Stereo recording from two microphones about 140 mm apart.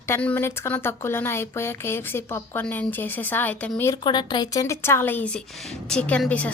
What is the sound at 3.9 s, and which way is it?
A woman's voice, 30° left (ahead or behind).